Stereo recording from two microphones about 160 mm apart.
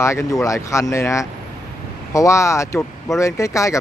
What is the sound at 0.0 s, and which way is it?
Speech, 15° left (ahead or behind).